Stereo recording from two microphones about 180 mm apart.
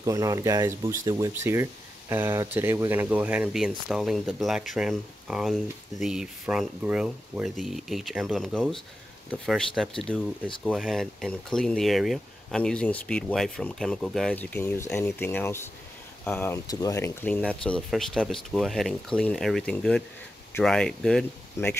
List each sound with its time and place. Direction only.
0.0 s speech: 20° right (ahead or behind); by 21.7 s 5° left (ahead or behind)